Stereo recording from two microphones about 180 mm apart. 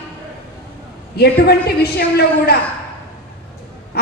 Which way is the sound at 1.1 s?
60° left (ahead or behind).